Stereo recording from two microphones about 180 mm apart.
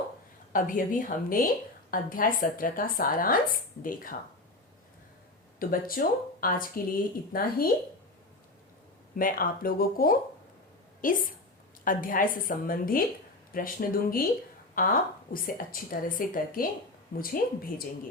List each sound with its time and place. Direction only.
0.5 s speech: 50° left (ahead or behind)
5.5 s speech: 50° left (ahead or behind)
9.1 s speech: 50° left (ahead or behind)